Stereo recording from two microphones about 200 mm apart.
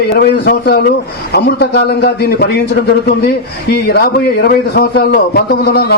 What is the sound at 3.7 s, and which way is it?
A man's voice, 50° left (ahead or behind).